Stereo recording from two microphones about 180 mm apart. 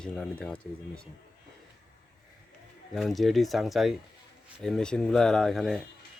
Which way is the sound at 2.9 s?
Centre (ahead or behind).